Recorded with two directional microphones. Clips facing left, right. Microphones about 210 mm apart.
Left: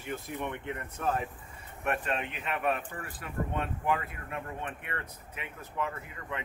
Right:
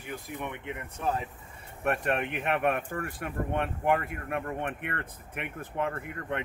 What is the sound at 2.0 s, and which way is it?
Speech, 65° right (ahead or behind).